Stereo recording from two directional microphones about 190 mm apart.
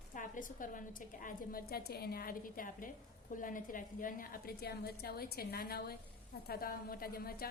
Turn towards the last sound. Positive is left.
turn(degrees=50)  # may be behind; listen again after turning